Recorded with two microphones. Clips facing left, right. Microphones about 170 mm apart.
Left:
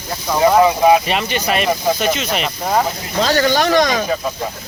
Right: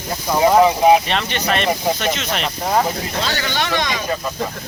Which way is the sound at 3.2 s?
45° left (ahead or behind).